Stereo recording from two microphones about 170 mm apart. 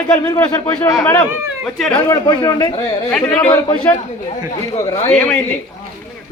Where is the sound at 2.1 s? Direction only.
25° left (ahead or behind).